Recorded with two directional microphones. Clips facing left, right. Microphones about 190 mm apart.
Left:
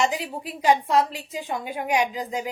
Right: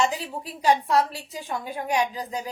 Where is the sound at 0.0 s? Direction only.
15° left (ahead or behind).